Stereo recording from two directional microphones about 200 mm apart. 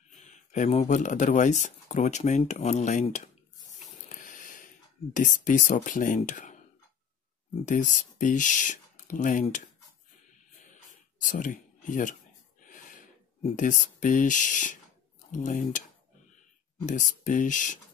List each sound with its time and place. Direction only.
0.5 s speech: 35° left (ahead or behind)
3.8 s a sound: 40° left (ahead or behind)
5.1 s speech: 40° left (ahead or behind)
7.6 s speech: 40° left (ahead or behind)
11.2 s speech: 40° left (ahead or behind)
12.6 s a sound: 40° left (ahead or behind)
15.3 s speech: 40° left (ahead or behind)
17.1 s speech: 40° left (ahead or behind)